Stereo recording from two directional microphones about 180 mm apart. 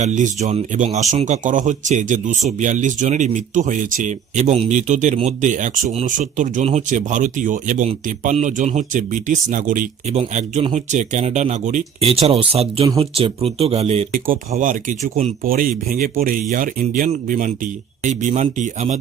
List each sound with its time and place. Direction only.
0.0 s speech: 40° right (ahead or behind)
14.1 s speech: 50° right (ahead or behind)